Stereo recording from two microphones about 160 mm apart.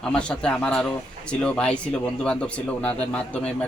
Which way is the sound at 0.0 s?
5° left (ahead or behind).